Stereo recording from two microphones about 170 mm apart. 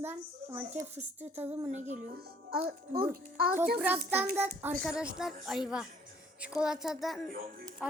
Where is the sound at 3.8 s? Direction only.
10° right (ahead or behind).